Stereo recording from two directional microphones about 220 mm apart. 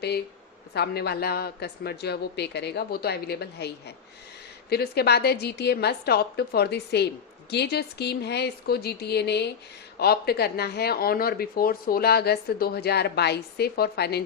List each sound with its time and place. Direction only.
0.7 s speech: 45° left (ahead or behind)